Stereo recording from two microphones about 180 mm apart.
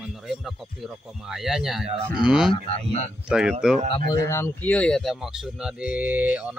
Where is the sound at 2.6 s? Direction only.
35° left (ahead or behind).